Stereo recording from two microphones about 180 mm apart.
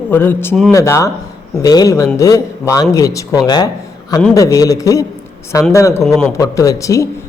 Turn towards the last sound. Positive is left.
turn(degrees=15)  # may be behind; listen again after turning